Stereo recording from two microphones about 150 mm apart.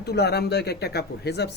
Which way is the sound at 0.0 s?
90° left.